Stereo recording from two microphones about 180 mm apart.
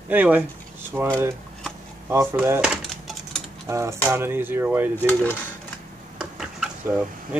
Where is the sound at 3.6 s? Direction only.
15° right (ahead or behind).